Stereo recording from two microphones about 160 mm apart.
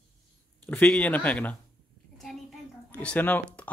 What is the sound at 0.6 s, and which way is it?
Speech, 10° left (ahead or behind).